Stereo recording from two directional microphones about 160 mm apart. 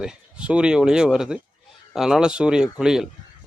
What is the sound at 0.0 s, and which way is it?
A man's voice, 5° right (ahead or behind).